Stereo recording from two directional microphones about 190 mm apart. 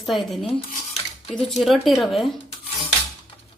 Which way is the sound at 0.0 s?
Centre (ahead or behind).